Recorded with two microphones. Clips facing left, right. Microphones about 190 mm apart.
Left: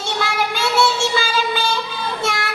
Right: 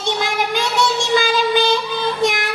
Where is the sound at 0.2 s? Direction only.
15° right (ahead or behind).